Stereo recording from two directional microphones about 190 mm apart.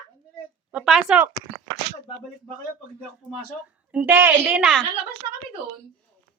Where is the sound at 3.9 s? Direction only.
10° right (ahead or behind).